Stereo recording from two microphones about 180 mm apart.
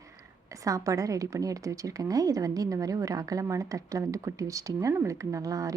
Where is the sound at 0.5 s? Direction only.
20° right (ahead or behind).